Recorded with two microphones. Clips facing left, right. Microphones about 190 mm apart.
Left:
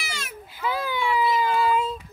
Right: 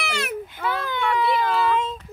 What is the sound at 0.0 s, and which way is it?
Baby cry, 65° right (ahead or behind).